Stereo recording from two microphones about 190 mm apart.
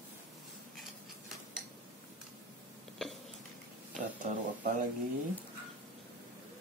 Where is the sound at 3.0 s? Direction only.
5° left (ahead or behind).